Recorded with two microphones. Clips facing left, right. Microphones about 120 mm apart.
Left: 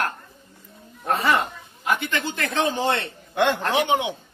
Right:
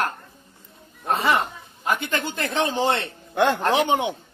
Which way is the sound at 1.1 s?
25° right (ahead or behind).